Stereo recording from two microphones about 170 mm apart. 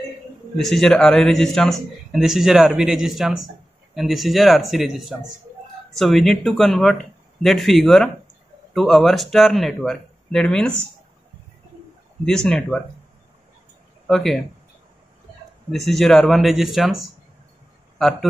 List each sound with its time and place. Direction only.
0.6 s a man's voice: centre (ahead or behind)
12.3 s a man's voice: 5° left (ahead or behind)
14.0 s a man's voice: centre (ahead or behind)
15.9 s a man's voice: centre (ahead or behind)